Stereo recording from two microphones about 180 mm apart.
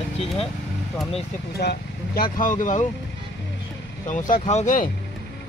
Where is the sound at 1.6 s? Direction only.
60° left (ahead or behind); by 2.8 s 45° left (ahead or behind).